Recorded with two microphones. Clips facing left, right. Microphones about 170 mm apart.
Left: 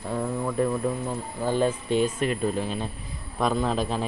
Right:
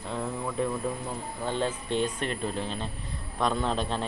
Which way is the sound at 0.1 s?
10° left (ahead or behind).